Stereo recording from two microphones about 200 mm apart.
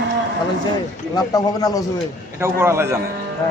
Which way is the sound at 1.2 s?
20° left (ahead or behind).